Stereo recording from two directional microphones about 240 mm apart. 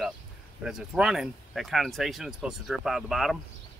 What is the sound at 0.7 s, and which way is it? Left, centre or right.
Speech, centre.